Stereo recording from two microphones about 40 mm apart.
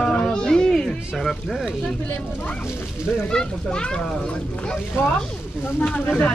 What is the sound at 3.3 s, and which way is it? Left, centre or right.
Speech, centre.